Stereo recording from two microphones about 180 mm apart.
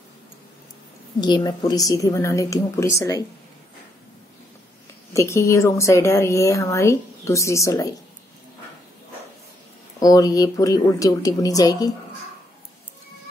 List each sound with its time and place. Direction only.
1.2 s a woman's voice: 25° left (ahead or behind)
5.1 s a woman's voice: 15° left (ahead or behind)
9.9 s a woman's voice: 20° left (ahead or behind)